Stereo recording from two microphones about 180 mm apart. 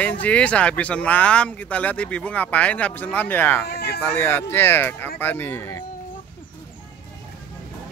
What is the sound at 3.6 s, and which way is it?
Speech, 65° left (ahead or behind).